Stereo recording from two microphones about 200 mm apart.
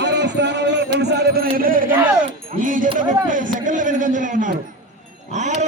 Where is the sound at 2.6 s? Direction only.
40° right (ahead or behind).